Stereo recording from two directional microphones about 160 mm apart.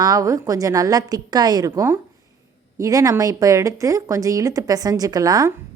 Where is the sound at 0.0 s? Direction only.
20° right (ahead or behind).